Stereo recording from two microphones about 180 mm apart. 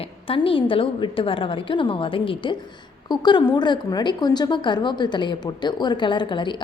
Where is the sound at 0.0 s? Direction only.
30° left (ahead or behind).